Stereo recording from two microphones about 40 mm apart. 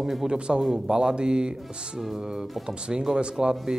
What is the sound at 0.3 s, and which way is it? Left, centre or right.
Speech, right.